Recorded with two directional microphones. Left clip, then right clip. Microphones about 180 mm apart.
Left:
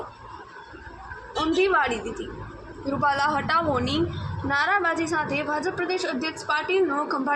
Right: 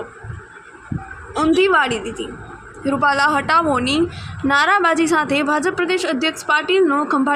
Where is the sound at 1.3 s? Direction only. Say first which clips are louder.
Right 7 dB; 45° right (ahead or behind).